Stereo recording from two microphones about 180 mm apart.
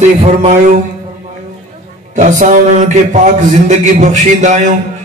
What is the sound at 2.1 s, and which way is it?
A man's voice, 45° right (ahead or behind).